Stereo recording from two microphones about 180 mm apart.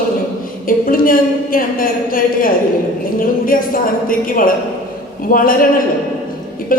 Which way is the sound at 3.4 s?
50° left (ahead or behind).